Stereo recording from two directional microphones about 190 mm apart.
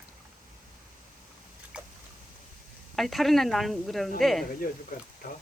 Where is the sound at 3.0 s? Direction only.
Centre (ahead or behind).